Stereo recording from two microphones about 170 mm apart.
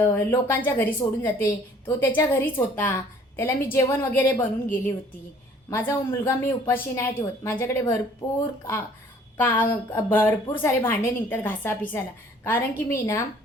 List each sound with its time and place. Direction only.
0.0 s a woman's voice: 15° left (ahead or behind)
9.4 s a woman's voice: 10° left (ahead or behind)